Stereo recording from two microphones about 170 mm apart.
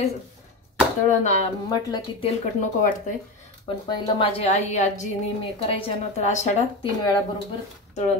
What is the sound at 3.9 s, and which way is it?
Speech, 35° left (ahead or behind).